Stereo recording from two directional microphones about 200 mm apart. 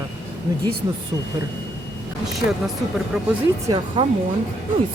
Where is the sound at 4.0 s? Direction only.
25° right (ahead or behind).